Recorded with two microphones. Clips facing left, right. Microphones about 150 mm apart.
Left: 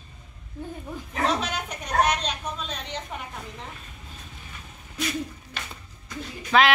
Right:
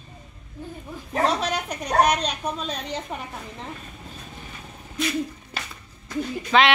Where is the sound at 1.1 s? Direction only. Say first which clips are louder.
Right 3 dB; 35° right (ahead or behind).